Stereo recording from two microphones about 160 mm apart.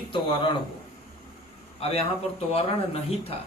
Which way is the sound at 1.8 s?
40° left (ahead or behind).